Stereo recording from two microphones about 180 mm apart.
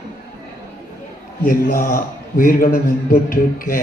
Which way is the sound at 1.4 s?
50° left (ahead or behind).